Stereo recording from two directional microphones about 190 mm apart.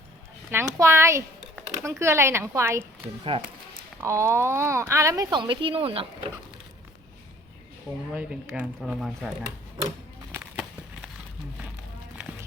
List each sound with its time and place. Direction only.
0.5 s speech: 15° right (ahead or behind)
3.3 s speech: 30° right (ahead or behind)
4.0 s speech: 15° right (ahead or behind)
8.1 s speech: 10° right (ahead or behind)
10.3 s a sound: 5° right (ahead or behind)
12.1 s music: 5° right (ahead or behind)